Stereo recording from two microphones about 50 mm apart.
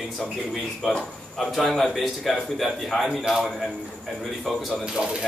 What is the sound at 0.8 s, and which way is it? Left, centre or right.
Speech, centre.